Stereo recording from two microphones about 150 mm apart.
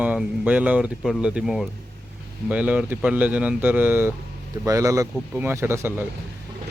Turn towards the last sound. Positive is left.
turn(degrees=-15)  # may be behind; listen again after turning